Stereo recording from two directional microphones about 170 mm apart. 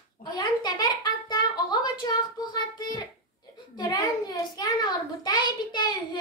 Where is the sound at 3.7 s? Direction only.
25° left (ahead or behind).